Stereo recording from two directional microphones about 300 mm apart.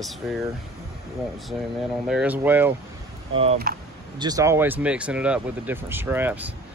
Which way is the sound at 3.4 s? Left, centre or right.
Right.